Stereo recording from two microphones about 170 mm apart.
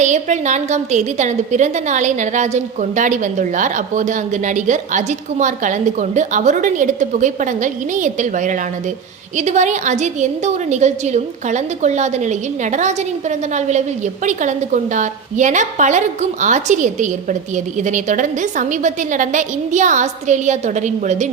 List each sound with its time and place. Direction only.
0.0 s a woman's voice: 45° right (ahead or behind)